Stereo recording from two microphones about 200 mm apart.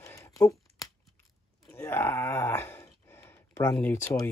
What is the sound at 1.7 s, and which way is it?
Speech, 15° left (ahead or behind).